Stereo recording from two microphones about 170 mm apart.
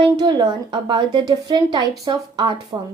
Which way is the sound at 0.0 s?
25° right (ahead or behind).